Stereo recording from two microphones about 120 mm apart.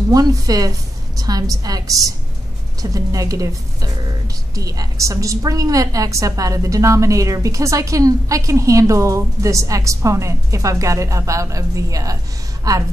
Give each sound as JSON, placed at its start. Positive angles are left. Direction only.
{"t": 0.1, "sound": "a woman's voice", "side_deg": -30}